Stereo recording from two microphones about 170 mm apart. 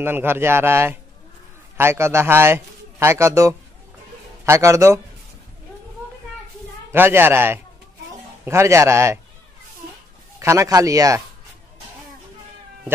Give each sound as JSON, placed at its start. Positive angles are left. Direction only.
{"t": 0.0, "sound": "a man's voice", "side_deg": -10}
{"t": 6.9, "sound": "a man's voice", "side_deg": -15}
{"t": 10.4, "sound": "speech", "side_deg": -15}